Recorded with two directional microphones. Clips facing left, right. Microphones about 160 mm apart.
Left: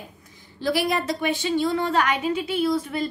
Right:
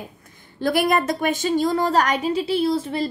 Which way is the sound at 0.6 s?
50° right (ahead or behind).